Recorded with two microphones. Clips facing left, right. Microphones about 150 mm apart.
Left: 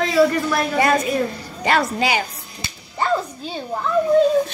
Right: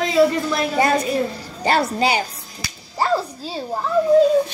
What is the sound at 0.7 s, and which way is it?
A woman's voice, 35° right (ahead or behind).